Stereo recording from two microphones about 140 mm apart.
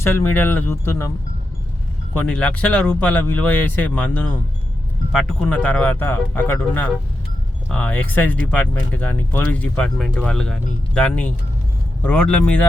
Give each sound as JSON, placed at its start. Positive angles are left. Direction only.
{"t": 0.0, "sound": "speech", "side_deg": 15}
{"t": 2.1, "sound": "speech", "side_deg": 10}
{"t": 5.5, "sound": "speech", "side_deg": 10}